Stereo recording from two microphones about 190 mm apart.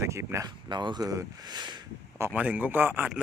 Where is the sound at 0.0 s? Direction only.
15° right (ahead or behind).